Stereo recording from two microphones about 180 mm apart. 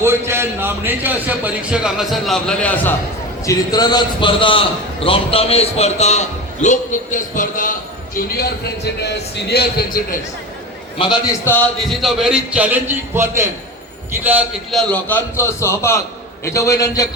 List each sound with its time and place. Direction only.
0.0 s a man's voice: 15° right (ahead or behind); by 2.9 s 10° left (ahead or behind)
3.4 s a man's voice: 20° left (ahead or behind); by 7.8 s 50° left (ahead or behind)
8.4 s a man's voice: 65° left (ahead or behind)
10.9 s a man's voice: 25° left (ahead or behind)
11.4 s a man's voice: 10° left (ahead or behind); by 14.8 s 10° right (ahead or behind)
14.8 s a man's voice: 5° left (ahead or behind)